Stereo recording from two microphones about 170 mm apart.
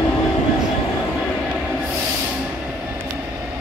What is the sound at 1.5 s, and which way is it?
Train, 5° right (ahead or behind).